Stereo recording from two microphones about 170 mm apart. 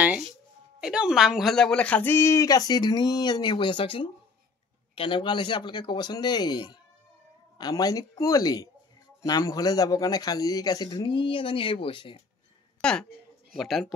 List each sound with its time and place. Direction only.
0.7 s speech: 5° right (ahead or behind); by 12.2 s 30° left (ahead or behind)
12.8 s speech: 5° left (ahead or behind)